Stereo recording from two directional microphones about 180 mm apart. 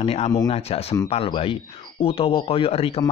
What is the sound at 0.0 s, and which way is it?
Speech, 35° left (ahead or behind).